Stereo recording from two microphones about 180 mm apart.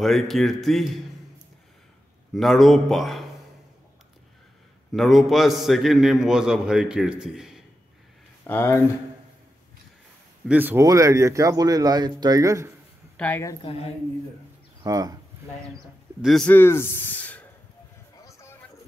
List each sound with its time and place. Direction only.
0.0 s a man's voice: centre (ahead or behind)
2.3 s a man's voice: centre (ahead or behind)
4.9 s a man's voice: centre (ahead or behind)
8.5 s a man's voice: 10° left (ahead or behind)
10.5 s speech: 10° right (ahead or behind)
13.2 s a man's voice: 15° left (ahead or behind)
13.6 s a woman's voice: 30° left (ahead or behind)
14.8 s speech: 20° right (ahead or behind)
16.2 s a man's voice: centre (ahead or behind)
18.2 s a sound: 15° left (ahead or behind)